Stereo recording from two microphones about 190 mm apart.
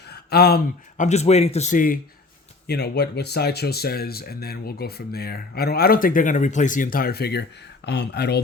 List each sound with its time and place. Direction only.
0.1 s speech: 55° left (ahead or behind)
1.0 s a man's voice: 35° left (ahead or behind)
2.6 s speech: 60° left (ahead or behind)